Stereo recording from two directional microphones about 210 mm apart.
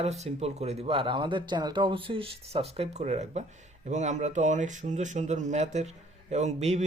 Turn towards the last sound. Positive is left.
turn(degrees=-30)  # may be behind; listen again after turning